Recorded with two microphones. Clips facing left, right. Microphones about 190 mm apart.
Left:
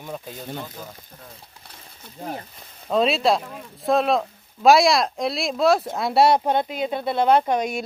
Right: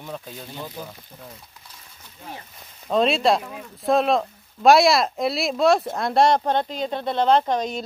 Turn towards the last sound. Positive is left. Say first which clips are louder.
# left 1 dB
turn(degrees=10)  # may be behind; listen again after turning